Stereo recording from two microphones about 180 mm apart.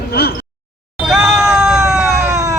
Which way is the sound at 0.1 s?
60° left (ahead or behind).